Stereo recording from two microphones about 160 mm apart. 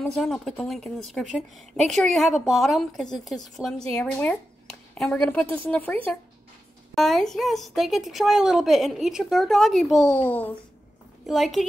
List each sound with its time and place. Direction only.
0.0 s a woman's voice: 5° left (ahead or behind)